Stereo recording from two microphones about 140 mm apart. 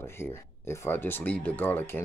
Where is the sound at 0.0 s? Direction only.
15° left (ahead or behind).